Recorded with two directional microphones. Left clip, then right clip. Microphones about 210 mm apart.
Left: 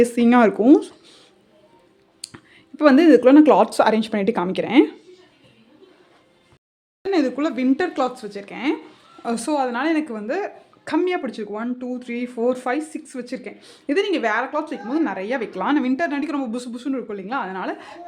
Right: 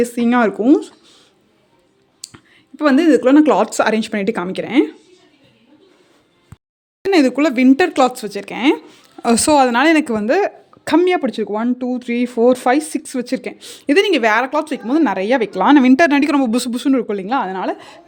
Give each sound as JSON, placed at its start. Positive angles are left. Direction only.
{"t": 0.0, "sound": "speech", "side_deg": 0}
{"t": 2.2, "sound": "a woman's voice", "side_deg": 0}
{"t": 7.0, "sound": "a woman's voice", "side_deg": -40}